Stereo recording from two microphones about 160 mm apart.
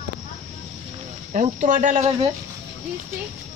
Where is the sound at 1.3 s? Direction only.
55° right (ahead or behind).